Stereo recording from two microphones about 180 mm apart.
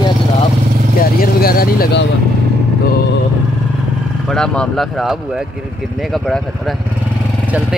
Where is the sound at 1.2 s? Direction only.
55° left (ahead or behind).